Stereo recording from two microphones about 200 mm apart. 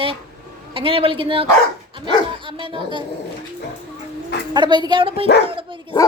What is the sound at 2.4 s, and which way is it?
Dog, 25° right (ahead or behind).